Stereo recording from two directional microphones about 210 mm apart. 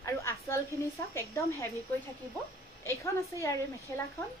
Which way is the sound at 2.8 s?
15° left (ahead or behind).